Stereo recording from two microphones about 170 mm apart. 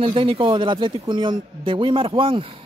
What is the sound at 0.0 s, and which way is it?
A man's voice, 30° right (ahead or behind).